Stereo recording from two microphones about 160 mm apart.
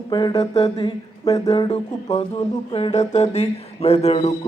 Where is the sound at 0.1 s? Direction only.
25° left (ahead or behind).